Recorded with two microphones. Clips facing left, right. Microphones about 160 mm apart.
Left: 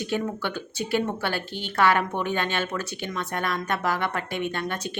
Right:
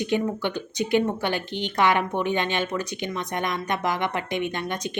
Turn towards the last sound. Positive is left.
turn(degrees=-15)  # may be behind; listen again after turning